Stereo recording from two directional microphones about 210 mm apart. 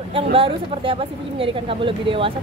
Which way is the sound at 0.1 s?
25° right (ahead or behind).